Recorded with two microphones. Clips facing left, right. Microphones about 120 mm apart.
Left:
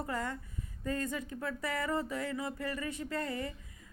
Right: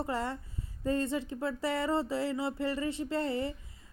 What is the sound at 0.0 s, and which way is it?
A woman's voice, 30° right (ahead or behind).